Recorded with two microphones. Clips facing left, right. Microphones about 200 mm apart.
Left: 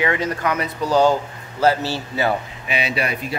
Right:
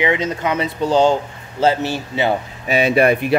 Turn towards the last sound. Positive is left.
turn(degrees=-60)  # may be behind; listen again after turning